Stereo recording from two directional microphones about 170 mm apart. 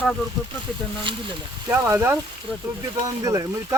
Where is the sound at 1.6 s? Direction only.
15° right (ahead or behind).